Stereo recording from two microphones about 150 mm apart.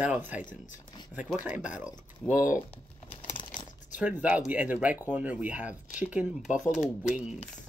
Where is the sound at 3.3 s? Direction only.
30° left (ahead or behind).